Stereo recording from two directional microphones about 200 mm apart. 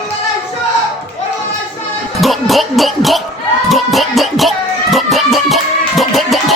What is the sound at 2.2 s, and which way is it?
Music, centre (ahead or behind).